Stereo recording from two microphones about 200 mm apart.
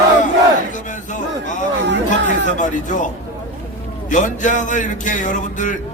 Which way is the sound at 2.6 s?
40° left (ahead or behind).